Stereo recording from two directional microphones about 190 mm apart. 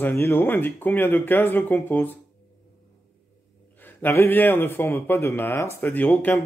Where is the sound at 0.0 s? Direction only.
10° left (ahead or behind).